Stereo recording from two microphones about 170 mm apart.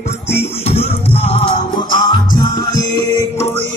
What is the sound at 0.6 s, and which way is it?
Music, 35° left (ahead or behind).